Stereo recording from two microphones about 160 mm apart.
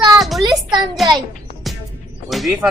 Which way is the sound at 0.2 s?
Centre (ahead or behind).